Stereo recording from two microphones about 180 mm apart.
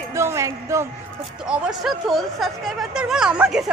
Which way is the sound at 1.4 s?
5° right (ahead or behind).